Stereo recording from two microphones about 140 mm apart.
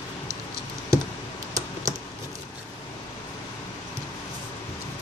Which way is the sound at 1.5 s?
25° right (ahead or behind).